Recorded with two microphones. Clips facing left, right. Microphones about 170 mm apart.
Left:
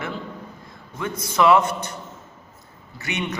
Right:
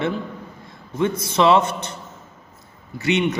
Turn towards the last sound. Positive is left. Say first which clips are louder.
# right 8 dB
turn(degrees=-25)  # may be behind; listen again after turning